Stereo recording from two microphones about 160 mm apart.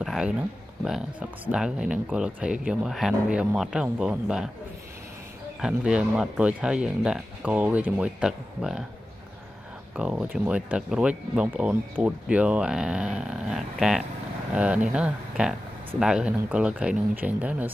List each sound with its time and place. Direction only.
0.0 s a sound: centre (ahead or behind)
1.5 s speech: 5° right (ahead or behind)
5.6 s speech: 5° right (ahead or behind)
9.9 s speech: 10° right (ahead or behind)